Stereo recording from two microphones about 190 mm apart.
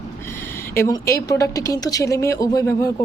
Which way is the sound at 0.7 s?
15° left (ahead or behind).